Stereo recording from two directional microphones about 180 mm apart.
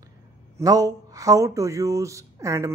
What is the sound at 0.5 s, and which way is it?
Speech, 20° right (ahead or behind).